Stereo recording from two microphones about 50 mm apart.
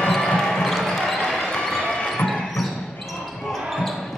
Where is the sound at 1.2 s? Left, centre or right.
Centre.